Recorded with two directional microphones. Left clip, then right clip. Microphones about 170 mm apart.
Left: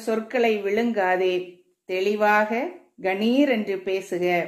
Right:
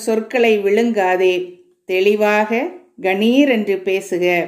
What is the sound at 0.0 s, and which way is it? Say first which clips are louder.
Speech: right 7 dB; 20° right (ahead or behind).